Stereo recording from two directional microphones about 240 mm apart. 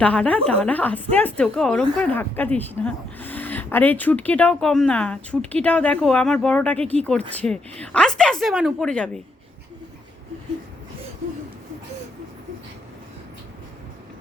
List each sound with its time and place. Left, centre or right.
0.0 s a woman's voice: centre